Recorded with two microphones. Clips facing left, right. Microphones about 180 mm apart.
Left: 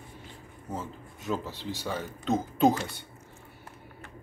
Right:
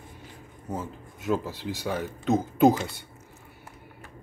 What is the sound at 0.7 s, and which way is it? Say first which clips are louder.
Speech: right 3 dB; 10° right (ahead or behind).